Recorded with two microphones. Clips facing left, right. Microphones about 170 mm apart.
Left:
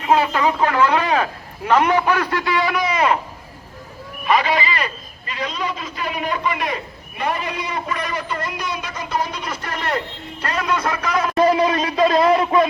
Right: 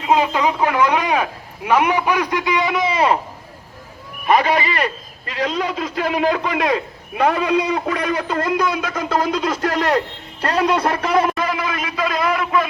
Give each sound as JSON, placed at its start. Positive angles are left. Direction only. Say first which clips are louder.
{"t": 0.0, "sound": "speech", "louder": "even", "side_deg": -15}
{"t": 4.3, "sound": "a man's voice", "louder": "right 2 dB", "side_deg": -55}
{"t": 9.0, "sound": "a man's voice", "louder": "right 5 dB", "side_deg": -90}
{"t": 10.4, "sound": "speech", "louder": "right 5 dB", "side_deg": -30}
{"t": 11.3, "sound": "a sound", "louder": "left 7 dB", "side_deg": 30}